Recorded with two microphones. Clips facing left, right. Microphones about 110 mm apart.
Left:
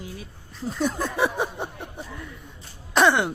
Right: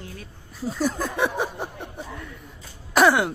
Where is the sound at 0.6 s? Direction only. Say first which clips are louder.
Right 1 dB; 5° right (ahead or behind).